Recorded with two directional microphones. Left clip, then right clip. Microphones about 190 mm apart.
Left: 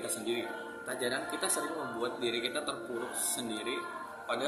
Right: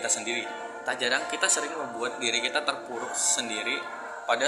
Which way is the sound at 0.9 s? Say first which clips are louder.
Right 8 dB; 15° left (ahead or behind).